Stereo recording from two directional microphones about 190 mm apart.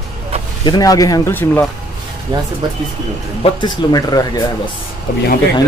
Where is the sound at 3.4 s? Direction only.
20° left (ahead or behind).